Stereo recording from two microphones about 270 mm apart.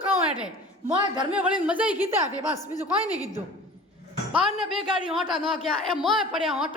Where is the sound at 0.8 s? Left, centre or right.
Centre.